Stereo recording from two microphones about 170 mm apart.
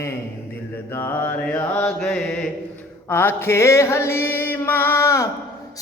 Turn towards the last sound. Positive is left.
turn(degrees=20)  # may be behind; listen again after turning